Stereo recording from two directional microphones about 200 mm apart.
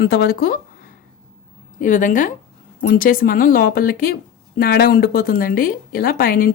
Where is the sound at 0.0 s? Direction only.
55° left (ahead or behind).